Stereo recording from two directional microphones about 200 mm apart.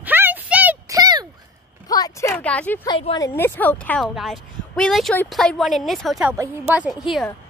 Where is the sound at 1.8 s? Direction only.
20° left (ahead or behind).